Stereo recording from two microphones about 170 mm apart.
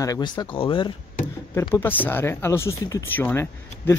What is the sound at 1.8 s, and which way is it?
Speech, 10° left (ahead or behind).